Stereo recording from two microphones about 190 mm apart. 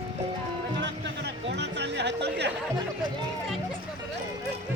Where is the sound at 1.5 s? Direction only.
65° right (ahead or behind).